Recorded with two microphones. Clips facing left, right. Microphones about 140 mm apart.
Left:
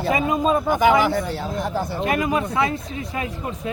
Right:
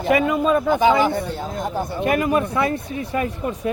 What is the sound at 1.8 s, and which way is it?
Speech, 55° right (ahead or behind).